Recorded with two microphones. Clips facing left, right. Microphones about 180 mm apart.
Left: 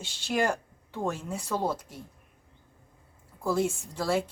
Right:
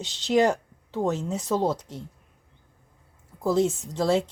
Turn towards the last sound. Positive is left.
turn(degrees=-25)  # may be behind; listen again after turning